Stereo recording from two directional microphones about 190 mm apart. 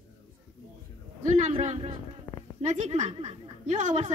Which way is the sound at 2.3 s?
20° left (ahead or behind).